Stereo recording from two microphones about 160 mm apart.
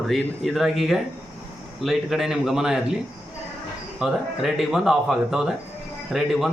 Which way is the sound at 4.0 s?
5° right (ahead or behind).